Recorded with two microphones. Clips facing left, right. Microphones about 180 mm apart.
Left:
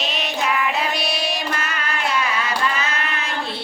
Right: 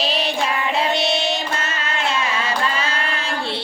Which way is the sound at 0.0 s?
30° right (ahead or behind).